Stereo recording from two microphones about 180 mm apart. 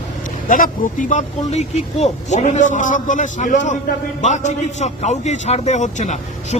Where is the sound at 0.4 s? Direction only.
50° left (ahead or behind).